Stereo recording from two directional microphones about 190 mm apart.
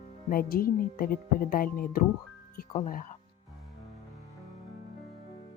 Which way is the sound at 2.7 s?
40° left (ahead or behind).